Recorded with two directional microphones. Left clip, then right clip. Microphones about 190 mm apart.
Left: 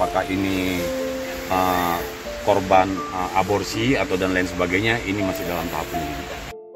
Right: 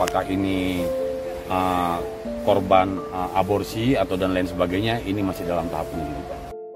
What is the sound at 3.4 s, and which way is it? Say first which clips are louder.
Speech: left 1 dB; 30° right (ahead or behind).